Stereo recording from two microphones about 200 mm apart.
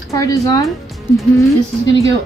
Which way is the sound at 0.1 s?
15° left (ahead or behind).